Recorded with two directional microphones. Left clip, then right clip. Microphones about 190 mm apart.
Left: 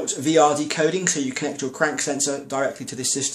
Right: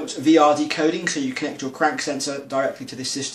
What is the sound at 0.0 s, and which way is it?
Speech, 40° left (ahead or behind).